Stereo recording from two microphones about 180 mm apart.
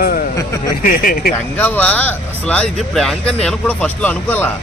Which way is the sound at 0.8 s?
55° left (ahead or behind).